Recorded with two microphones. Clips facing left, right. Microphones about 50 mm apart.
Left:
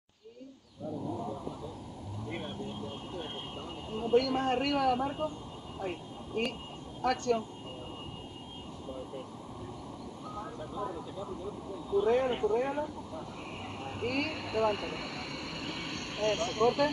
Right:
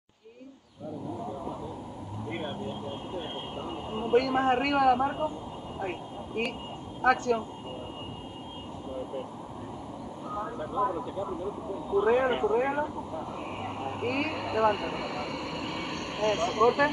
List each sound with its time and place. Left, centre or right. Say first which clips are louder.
2.2 s vehicle: right 4 dB; right
3.2 s a sound: right 4 dB; right
4.6 s speech: right 5 dB; right
5.8 s vehicle: right 3 dB; right
7.0 s speech: right 5 dB; right
10.8 s speech: right 10 dB; right
11.9 s speech: right 3 dB; right
12.3 s speech: right 4 dB; right